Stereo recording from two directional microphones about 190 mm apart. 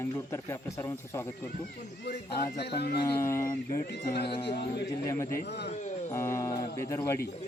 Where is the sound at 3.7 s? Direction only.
60° left (ahead or behind).